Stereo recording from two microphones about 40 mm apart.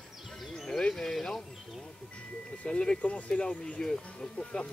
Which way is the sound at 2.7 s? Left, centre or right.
Left.